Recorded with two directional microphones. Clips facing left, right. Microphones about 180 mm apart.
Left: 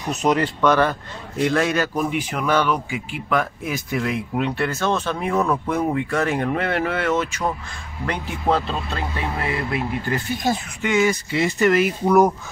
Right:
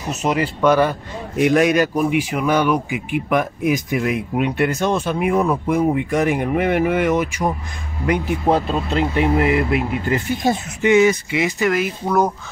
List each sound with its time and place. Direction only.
0.1 s a man's voice: 5° right (ahead or behind)
11.6 s speech: centre (ahead or behind)